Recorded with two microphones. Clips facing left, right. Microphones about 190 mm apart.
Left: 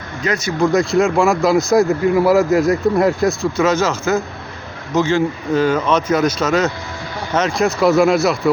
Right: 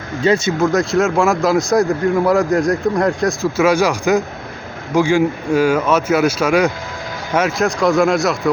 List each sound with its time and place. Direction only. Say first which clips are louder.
0.2 s speech: right 6 dB; 25° right (ahead or behind)
0.6 s a man's voice: left 5 dB; centre (ahead or behind)
3.6 s speech: right 2 dB; 10° right (ahead or behind)
7.8 s a man's voice: left 2 dB; 5° left (ahead or behind)